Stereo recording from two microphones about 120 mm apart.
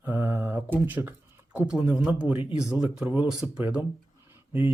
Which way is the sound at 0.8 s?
15° right (ahead or behind).